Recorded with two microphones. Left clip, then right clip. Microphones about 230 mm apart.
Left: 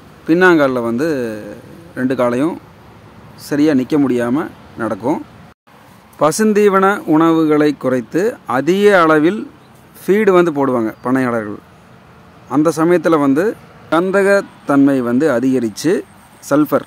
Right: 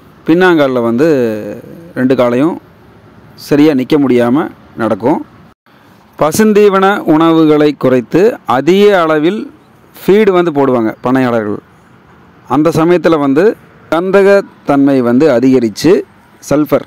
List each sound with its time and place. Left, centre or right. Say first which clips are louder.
0.3 s a man's voice: right 3 dB; right
6.1 s a man's voice: right 4 dB; right